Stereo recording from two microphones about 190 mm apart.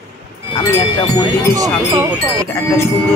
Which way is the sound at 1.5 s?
20° right (ahead or behind).